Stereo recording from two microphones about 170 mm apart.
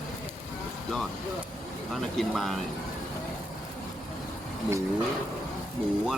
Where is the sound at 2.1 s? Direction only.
Centre (ahead or behind).